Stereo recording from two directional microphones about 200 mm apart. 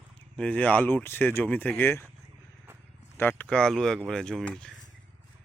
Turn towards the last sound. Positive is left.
turn(degrees=5)  # may be behind; listen again after turning